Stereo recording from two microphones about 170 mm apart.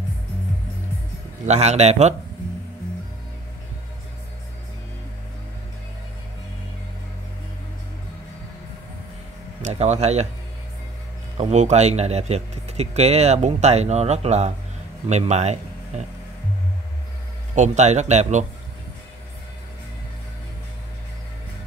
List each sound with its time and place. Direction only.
1.4 s speech: 40° right (ahead or behind)
9.6 s speech: 40° right (ahead or behind)
11.3 s speech: 40° right (ahead or behind)
17.6 s speech: 40° right (ahead or behind)